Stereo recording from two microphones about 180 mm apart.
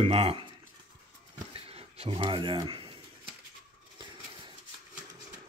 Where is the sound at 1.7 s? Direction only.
35° right (ahead or behind).